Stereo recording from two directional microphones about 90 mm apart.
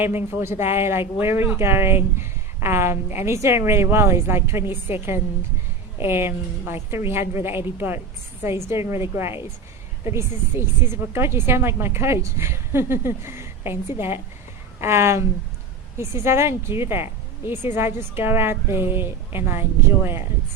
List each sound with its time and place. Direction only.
0.3 s speech: 30° right (ahead or behind)